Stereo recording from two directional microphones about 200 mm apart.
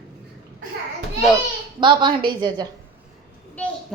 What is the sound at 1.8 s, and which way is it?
Speech, 25° right (ahead or behind).